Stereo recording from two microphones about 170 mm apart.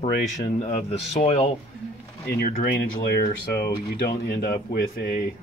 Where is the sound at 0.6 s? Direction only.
35° left (ahead or behind).